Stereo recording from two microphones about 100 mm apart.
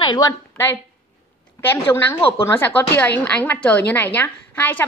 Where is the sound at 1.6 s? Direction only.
25° left (ahead or behind).